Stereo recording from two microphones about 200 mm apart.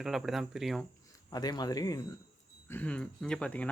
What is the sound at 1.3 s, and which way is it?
Speech, 20° left (ahead or behind).